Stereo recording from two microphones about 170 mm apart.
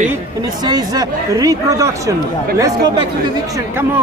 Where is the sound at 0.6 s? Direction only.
25° right (ahead or behind).